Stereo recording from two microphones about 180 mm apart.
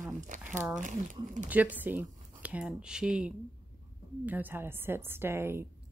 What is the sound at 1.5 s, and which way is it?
A woman's voice, 10° right (ahead or behind).